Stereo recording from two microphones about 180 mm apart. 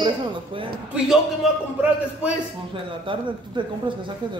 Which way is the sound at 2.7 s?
25° right (ahead or behind).